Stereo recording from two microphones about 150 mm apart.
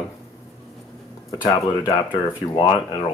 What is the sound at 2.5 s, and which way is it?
Speech, 30° left (ahead or behind).